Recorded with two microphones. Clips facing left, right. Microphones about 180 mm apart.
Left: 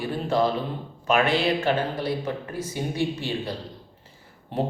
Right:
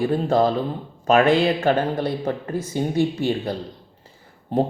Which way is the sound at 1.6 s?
50° right (ahead or behind).